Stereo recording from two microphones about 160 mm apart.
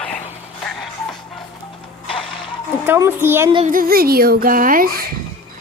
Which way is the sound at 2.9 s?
15° right (ahead or behind).